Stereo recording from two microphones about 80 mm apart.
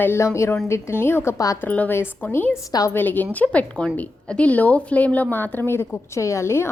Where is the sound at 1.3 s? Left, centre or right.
Left.